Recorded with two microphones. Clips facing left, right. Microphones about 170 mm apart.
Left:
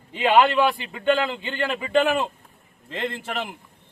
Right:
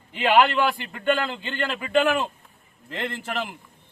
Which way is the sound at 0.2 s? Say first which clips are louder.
Left 1 dB; 20° left (ahead or behind).